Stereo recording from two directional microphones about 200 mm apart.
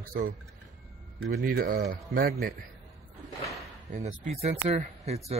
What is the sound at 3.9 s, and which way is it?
Speech, 35° right (ahead or behind).